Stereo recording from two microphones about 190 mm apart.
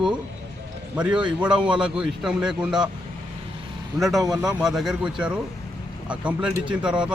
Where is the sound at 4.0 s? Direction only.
Centre (ahead or behind).